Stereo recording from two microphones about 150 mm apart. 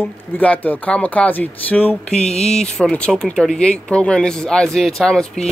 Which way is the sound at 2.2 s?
45° left (ahead or behind).